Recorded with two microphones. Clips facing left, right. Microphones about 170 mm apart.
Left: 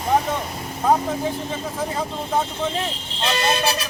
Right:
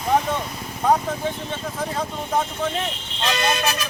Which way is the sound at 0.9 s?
5° left (ahead or behind).